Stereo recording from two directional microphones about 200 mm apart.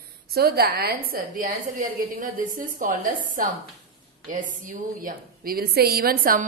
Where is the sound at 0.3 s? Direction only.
50° right (ahead or behind).